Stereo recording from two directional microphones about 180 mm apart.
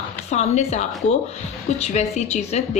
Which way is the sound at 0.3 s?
40° left (ahead or behind).